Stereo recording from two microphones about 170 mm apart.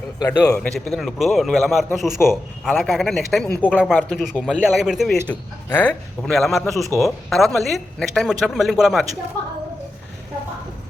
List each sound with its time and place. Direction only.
0.2 s a man's voice: 20° left (ahead or behind)
0.7 s a man's voice: centre (ahead or behind)